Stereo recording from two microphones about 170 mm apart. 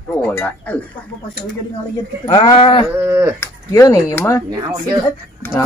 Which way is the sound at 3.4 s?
15° left (ahead or behind).